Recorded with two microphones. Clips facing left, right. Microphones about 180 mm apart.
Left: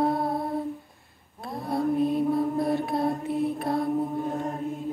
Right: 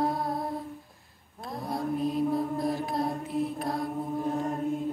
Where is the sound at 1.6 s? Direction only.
Centre (ahead or behind).